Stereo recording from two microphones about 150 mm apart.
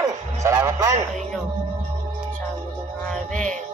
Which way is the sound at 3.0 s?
5° left (ahead or behind).